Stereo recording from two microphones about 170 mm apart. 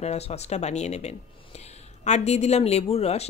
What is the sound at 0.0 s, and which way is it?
Speech, 40° left (ahead or behind).